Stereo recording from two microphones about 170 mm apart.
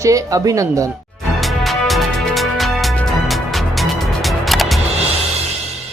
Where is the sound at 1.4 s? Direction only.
Centre (ahead or behind).